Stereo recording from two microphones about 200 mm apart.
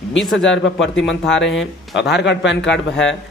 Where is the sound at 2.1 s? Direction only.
60° left (ahead or behind).